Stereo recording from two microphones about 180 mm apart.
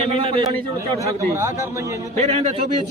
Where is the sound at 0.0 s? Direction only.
30° right (ahead or behind).